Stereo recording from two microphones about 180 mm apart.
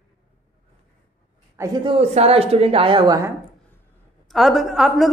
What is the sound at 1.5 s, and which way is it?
A woman's voice, 25° right (ahead or behind).